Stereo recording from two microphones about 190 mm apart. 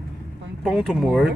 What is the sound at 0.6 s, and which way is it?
Speech, centre (ahead or behind).